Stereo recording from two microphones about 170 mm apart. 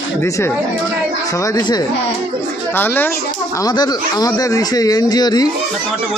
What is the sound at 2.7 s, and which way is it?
Speech, 10° left (ahead or behind).